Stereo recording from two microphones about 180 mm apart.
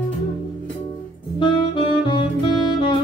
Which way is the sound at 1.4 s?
25° left (ahead or behind).